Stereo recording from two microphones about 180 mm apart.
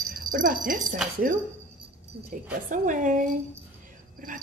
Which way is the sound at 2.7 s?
45° right (ahead or behind).